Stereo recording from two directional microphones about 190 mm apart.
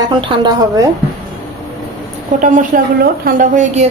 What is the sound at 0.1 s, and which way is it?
Speech, 25° right (ahead or behind).